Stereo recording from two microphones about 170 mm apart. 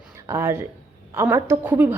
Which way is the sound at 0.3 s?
15° right (ahead or behind).